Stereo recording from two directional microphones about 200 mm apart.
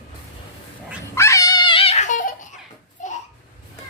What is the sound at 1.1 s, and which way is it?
Giggle, 15° left (ahead or behind).